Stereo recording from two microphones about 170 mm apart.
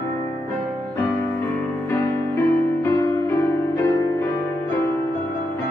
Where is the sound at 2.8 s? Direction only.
15° left (ahead or behind).